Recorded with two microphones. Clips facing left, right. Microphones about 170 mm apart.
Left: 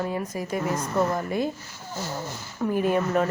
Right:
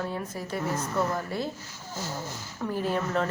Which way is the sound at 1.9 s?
65° left (ahead or behind).